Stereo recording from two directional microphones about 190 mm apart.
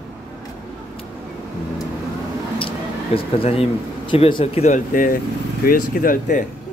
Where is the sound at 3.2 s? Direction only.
30° left (ahead or behind).